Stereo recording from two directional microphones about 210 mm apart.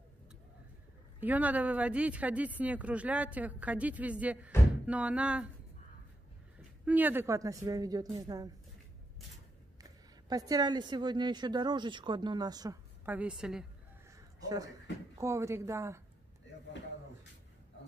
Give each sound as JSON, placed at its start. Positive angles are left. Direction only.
{"t": 1.2, "sound": "speech", "side_deg": -5}
{"t": 6.9, "sound": "speech", "side_deg": -10}
{"t": 9.8, "sound": "speech", "side_deg": -15}
{"t": 14.1, "sound": "a sound", "side_deg": -15}
{"t": 15.1, "sound": "speech", "side_deg": -15}